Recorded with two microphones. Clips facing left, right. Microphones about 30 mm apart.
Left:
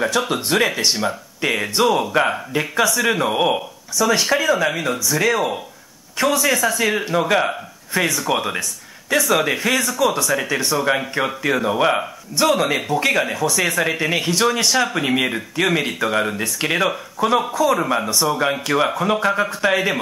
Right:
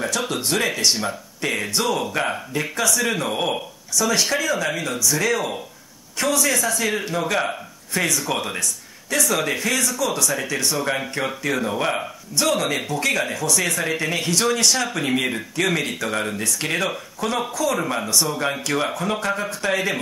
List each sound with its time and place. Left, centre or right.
0.0 s speech: left
6.8 s speech: left